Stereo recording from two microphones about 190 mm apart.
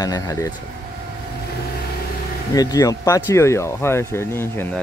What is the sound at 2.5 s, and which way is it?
Speech, 20° left (ahead or behind).